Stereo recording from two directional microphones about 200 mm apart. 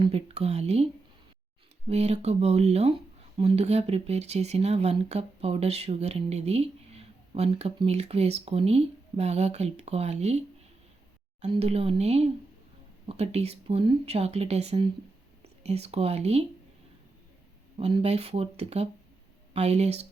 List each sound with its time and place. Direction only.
0.0 s speech: 30° right (ahead or behind)
1.9 s speech: 30° right (ahead or behind)
17.7 s speech: 30° right (ahead or behind)